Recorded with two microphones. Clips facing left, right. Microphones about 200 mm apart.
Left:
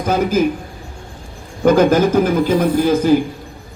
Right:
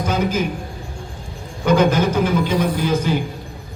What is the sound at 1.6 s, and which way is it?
Speech, 45° left (ahead or behind).